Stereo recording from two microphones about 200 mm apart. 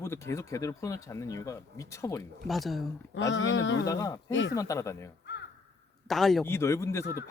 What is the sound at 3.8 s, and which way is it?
Speech, 15° left (ahead or behind).